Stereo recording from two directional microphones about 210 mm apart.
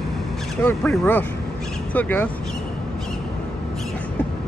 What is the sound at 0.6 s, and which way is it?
Speech, 10° left (ahead or behind).